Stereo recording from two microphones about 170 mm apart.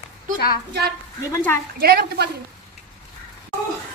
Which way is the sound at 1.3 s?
10° left (ahead or behind).